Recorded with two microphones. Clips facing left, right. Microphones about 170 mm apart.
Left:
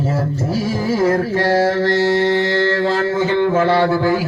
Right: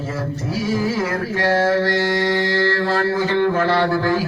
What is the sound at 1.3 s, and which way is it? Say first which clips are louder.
Speech: left 2 dB; 30° left (ahead or behind).